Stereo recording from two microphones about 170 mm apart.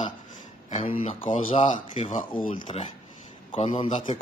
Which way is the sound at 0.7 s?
40° left (ahead or behind).